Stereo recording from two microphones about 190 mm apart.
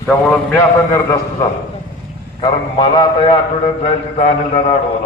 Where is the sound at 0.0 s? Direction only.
5° left (ahead or behind).